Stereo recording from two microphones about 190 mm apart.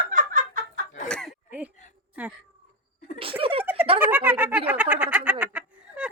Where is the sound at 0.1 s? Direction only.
45° right (ahead or behind).